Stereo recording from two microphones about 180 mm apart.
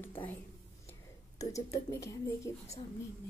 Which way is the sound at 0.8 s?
20° left (ahead or behind).